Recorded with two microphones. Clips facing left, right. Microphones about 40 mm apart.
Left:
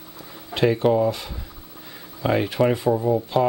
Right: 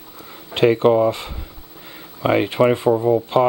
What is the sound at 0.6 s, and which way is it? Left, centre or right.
Speech, right.